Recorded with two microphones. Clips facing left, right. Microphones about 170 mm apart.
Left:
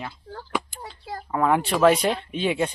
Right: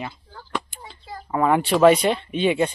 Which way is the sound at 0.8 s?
70° left (ahead or behind).